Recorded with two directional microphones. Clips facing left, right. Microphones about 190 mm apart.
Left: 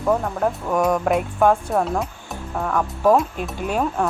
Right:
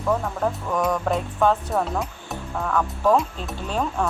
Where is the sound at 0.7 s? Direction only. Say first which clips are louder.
Left 5 dB; 15° left (ahead or behind).